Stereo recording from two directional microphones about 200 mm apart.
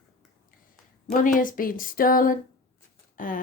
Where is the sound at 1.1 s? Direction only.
40° left (ahead or behind).